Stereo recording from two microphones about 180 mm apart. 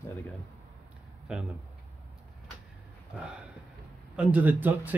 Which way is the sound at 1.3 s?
5° right (ahead or behind).